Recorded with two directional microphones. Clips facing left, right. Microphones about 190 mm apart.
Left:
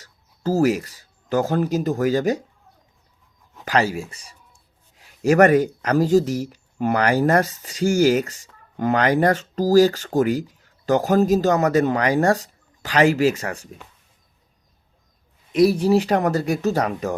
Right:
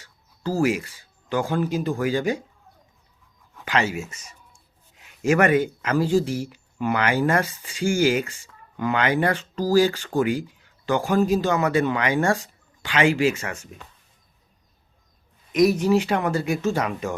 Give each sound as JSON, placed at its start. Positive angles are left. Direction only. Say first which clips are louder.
{"t": 0.0, "sound": "speech", "louder": "left 4 dB", "side_deg": 40}
{"t": 3.6, "sound": "speech", "louder": "left 3 dB", "side_deg": 40}
{"t": 15.5, "sound": "speech", "louder": "left 2 dB", "side_deg": 30}